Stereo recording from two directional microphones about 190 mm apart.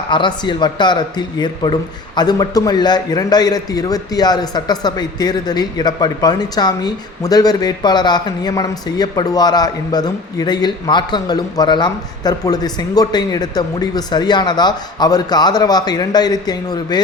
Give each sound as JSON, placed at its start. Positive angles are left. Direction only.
{"t": 0.1, "sound": "speech", "side_deg": 25}